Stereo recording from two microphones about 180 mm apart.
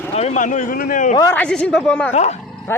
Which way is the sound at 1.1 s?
20° left (ahead or behind).